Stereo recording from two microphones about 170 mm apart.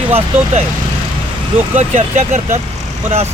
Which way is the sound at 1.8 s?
40° right (ahead or behind).